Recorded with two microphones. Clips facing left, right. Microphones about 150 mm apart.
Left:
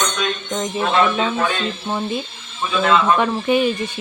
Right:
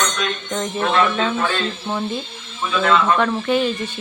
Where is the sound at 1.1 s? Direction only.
10° left (ahead or behind).